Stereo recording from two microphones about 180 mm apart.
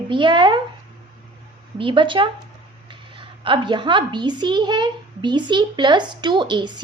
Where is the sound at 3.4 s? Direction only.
25° right (ahead or behind).